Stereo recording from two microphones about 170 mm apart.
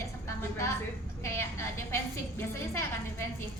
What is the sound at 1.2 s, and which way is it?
A woman's voice, 15° left (ahead or behind).